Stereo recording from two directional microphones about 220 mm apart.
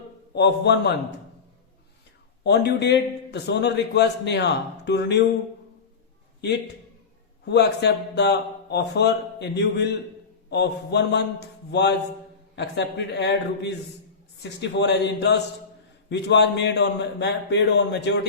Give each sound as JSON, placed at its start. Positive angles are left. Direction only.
{"t": 0.3, "sound": "a man's voice", "side_deg": 50}
{"t": 2.4, "sound": "a man's voice", "side_deg": 50}
{"t": 7.4, "sound": "a man's voice", "side_deg": 50}